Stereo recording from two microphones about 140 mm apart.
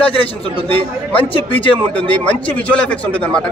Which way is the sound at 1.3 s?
40° left (ahead or behind).